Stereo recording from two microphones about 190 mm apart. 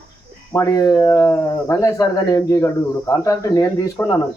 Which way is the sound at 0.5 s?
15° left (ahead or behind).